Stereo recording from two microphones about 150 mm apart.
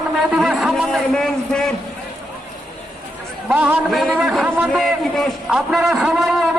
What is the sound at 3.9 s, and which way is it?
A man's voice, centre (ahead or behind).